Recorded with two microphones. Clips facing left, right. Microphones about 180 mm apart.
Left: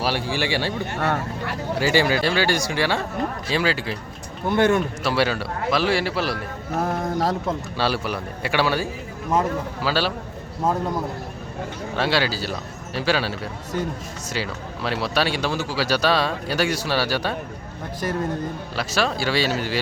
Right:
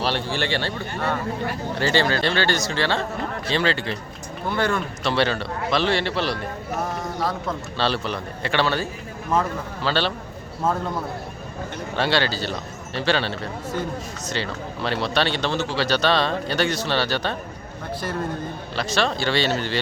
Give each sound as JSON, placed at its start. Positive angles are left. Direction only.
{"t": 0.0, "sound": "speech", "side_deg": 5}
{"t": 0.9, "sound": "speech", "side_deg": 70}
{"t": 1.7, "sound": "speech", "side_deg": 10}
{"t": 4.4, "sound": "speech", "side_deg": 20}
{"t": 5.0, "sound": "a man's voice", "side_deg": 5}
{"t": 6.7, "sound": "a sound", "side_deg": 55}
{"t": 7.8, "sound": "a man's voice", "side_deg": 10}
{"t": 11.9, "sound": "a man's voice", "side_deg": 5}
{"t": 18.8, "sound": "a man's voice", "side_deg": 5}